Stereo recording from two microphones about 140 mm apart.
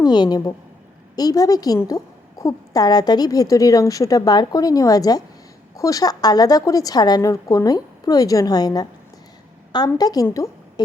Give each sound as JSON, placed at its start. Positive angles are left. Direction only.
{"t": 0.0, "sound": "a woman's voice", "side_deg": 30}